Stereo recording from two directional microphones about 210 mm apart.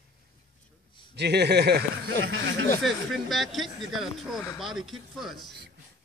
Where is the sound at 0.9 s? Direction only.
25° left (ahead or behind).